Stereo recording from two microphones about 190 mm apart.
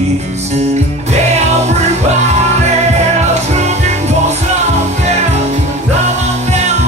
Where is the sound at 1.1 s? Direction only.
35° right (ahead or behind).